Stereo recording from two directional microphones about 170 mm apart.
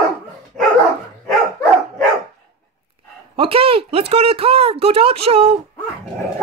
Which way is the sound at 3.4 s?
30° right (ahead or behind).